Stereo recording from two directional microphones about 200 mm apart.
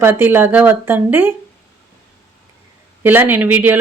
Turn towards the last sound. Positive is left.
turn(degrees=-10)  # may be behind; listen again after turning